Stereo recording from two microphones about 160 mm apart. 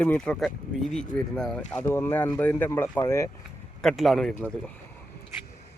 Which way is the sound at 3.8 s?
Centre (ahead or behind).